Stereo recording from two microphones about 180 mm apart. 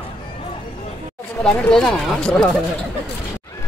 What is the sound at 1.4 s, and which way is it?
Speech, 5° left (ahead or behind).